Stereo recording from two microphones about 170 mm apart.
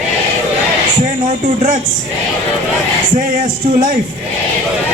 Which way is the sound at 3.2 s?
50° right (ahead or behind).